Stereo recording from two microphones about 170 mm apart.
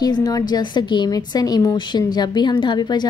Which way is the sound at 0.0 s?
20° left (ahead or behind).